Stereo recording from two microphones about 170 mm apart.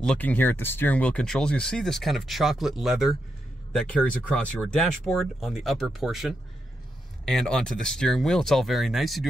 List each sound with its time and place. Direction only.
0.0 s speech: 5° left (ahead or behind)